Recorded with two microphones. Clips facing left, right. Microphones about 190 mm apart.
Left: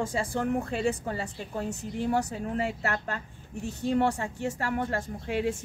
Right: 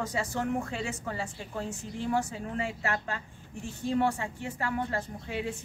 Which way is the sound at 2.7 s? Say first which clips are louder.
Left 2 dB; 60° left (ahead or behind).